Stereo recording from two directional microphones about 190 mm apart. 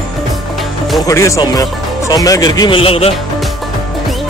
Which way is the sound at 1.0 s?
15° left (ahead or behind).